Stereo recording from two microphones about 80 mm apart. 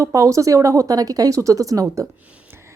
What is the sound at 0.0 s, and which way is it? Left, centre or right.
A woman's voice, right.